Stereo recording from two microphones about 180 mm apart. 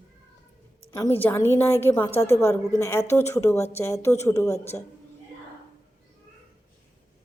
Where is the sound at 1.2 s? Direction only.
10° left (ahead or behind).